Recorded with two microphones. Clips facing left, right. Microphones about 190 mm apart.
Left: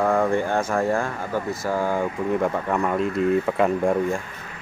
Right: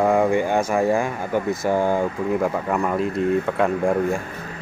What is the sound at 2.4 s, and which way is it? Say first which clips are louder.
Speech: right 1 dB; centre (ahead or behind).